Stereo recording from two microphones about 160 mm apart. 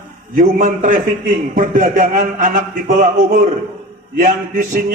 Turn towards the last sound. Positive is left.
turn(degrees=-55)  # may be behind; listen again after turning